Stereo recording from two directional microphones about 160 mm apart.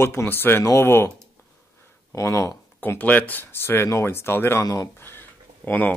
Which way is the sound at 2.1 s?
20° left (ahead or behind).